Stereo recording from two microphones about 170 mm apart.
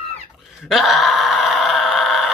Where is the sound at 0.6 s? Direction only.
Centre (ahead or behind).